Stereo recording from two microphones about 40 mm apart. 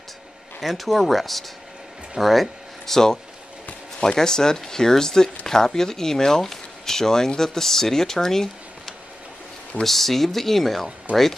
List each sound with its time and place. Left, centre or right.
0.6 s speech: centre
2.9 s speech: centre
11.1 s speech: right